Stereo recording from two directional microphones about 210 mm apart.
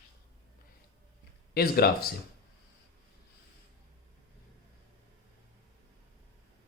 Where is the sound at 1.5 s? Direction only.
45° left (ahead or behind).